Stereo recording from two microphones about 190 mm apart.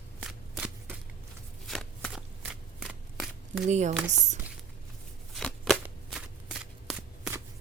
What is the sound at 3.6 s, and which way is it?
Speech, 40° right (ahead or behind).